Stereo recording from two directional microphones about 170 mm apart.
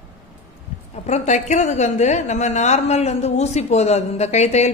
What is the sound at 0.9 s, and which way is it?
A woman's voice, 45° left (ahead or behind).